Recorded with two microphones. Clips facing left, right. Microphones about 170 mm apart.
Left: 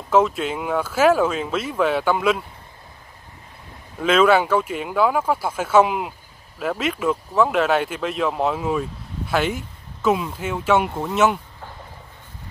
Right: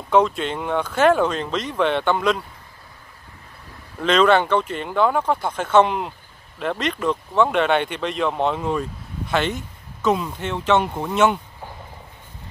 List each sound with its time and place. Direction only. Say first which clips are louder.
0.1 s speech: even; 5° left (ahead or behind)
4.0 s speech: even; 5° left (ahead or behind)